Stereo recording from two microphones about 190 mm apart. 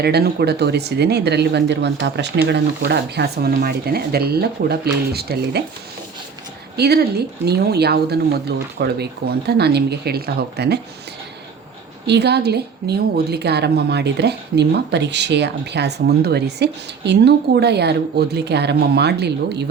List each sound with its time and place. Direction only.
0.0 s a woman's voice: 55° right (ahead or behind)
6.7 s a woman's voice: 55° right (ahead or behind)
12.0 s a woman's voice: 60° right (ahead or behind)